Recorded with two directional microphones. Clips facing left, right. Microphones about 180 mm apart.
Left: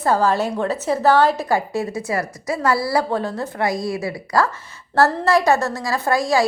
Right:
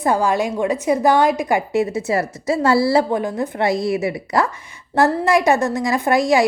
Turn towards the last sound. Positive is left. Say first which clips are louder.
# right 3 dB
turn(degrees=-20)  # may be behind; listen again after turning